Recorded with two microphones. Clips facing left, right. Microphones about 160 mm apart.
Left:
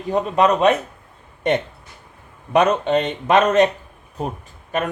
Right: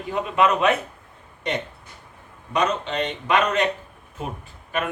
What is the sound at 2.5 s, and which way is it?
Speech, 55° left (ahead or behind).